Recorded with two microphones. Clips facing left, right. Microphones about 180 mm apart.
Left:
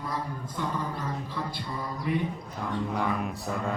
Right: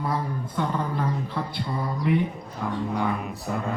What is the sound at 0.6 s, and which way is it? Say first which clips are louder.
Speech: right 5 dB; 55° right (ahead or behind).